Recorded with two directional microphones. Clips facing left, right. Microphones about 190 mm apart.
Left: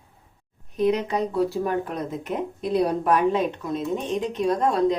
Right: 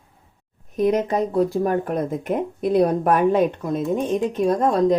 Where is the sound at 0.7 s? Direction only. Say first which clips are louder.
Right 3 dB; 45° right (ahead or behind).